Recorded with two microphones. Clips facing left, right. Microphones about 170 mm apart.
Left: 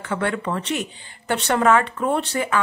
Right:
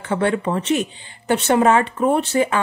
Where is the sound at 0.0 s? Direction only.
20° right (ahead or behind).